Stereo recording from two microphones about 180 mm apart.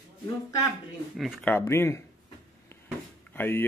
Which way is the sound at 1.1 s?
Centre (ahead or behind).